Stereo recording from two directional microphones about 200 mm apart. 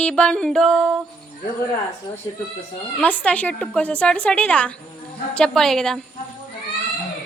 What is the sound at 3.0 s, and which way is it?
A woman's voice, 10° left (ahead or behind).